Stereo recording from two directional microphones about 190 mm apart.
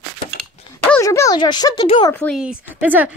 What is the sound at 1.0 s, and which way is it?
Speech, 15° left (ahead or behind).